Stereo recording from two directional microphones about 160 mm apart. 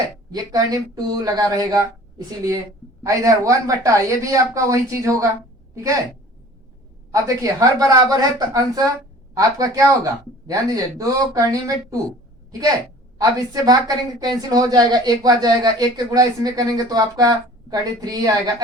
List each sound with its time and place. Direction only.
0.3 s a woman's voice: 25° right (ahead or behind)
7.1 s a woman's voice: 20° right (ahead or behind)